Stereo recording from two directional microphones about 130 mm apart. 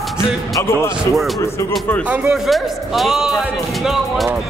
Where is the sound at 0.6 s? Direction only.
20° left (ahead or behind).